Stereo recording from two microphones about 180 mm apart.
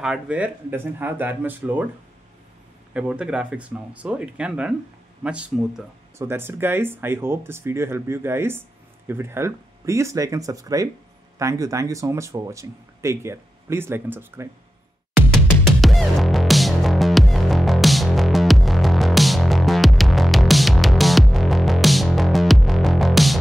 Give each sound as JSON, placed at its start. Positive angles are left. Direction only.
{"t": 0.0, "sound": "speech", "side_deg": -5}
{"t": 2.9, "sound": "speech", "side_deg": -5}
{"t": 15.6, "sound": "music", "side_deg": 0}